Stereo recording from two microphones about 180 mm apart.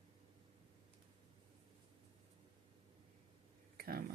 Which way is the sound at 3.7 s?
55° right (ahead or behind).